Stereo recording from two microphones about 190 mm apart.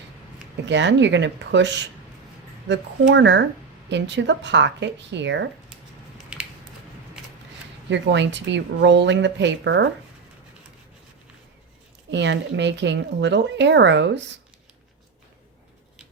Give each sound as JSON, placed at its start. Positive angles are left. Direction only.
{"t": 0.7, "sound": "a woman's voice", "side_deg": -70}
{"t": 7.9, "sound": "a woman's voice", "side_deg": -70}
{"t": 12.1, "sound": "a woman's voice", "side_deg": -65}